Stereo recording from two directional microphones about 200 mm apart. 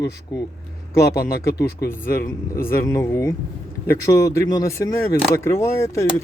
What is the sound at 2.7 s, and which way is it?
Speech, 15° left (ahead or behind).